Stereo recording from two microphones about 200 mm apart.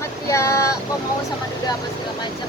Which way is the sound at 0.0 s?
15° left (ahead or behind).